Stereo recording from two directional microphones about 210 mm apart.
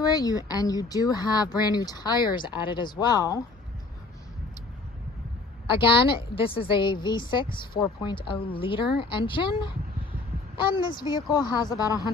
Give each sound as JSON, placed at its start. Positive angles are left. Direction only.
{"t": 0.0, "sound": "a woman's voice", "side_deg": 20}
{"t": 5.7, "sound": "a woman's voice", "side_deg": 25}
{"t": 11.0, "sound": "a woman's voice", "side_deg": 20}